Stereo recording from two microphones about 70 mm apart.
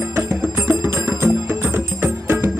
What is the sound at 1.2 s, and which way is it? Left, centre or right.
Music, right.